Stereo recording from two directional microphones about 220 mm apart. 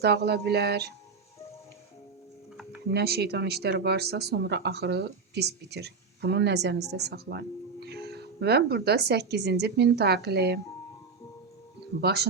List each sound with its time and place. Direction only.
0.0 s speech: 50° right (ahead or behind)
2.9 s speech: 45° right (ahead or behind)
11.9 s speech: 45° right (ahead or behind)